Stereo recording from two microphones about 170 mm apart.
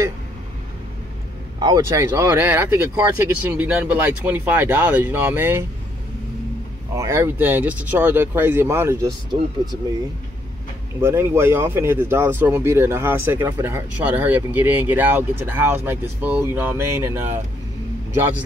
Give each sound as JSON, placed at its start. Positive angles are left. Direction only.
{"t": 1.6, "sound": "speech", "side_deg": -20}
{"t": 7.0, "sound": "speech", "side_deg": -15}
{"t": 9.3, "sound": "speech", "side_deg": -30}
{"t": 11.0, "sound": "speech", "side_deg": -15}